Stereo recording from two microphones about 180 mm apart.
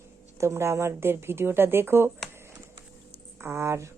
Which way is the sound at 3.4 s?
15° right (ahead or behind).